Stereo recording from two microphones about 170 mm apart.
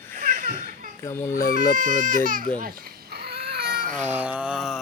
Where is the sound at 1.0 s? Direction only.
15° left (ahead or behind).